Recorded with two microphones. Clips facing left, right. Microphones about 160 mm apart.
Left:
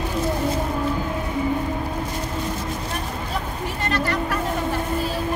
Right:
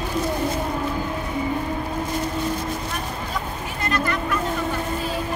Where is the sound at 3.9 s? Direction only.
35° left (ahead or behind).